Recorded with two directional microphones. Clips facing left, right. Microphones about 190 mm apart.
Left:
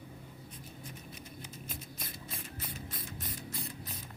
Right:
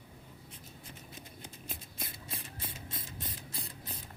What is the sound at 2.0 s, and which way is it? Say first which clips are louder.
Ratchet: even; 25° right (ahead or behind).